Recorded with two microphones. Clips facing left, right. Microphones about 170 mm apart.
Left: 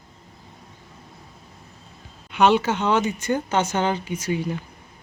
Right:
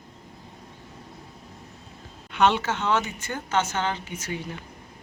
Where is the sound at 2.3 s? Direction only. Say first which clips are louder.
Left 4 dB; 10° left (ahead or behind).